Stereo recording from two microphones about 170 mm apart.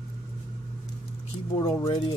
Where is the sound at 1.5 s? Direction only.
20° left (ahead or behind).